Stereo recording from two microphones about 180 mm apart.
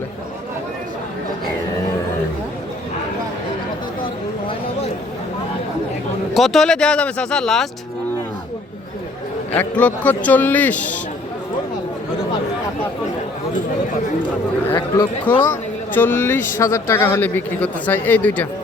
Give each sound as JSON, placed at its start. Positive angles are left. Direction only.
{"t": 6.3, "sound": "speech", "side_deg": 0}
{"t": 9.5, "sound": "speech", "side_deg": 10}
{"t": 14.8, "sound": "speech", "side_deg": 25}
{"t": 15.4, "sound": "speech", "side_deg": 10}